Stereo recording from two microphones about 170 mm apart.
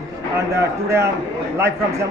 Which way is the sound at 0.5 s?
15° right (ahead or behind).